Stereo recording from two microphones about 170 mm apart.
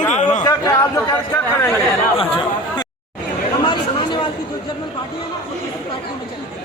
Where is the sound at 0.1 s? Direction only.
45° left (ahead or behind).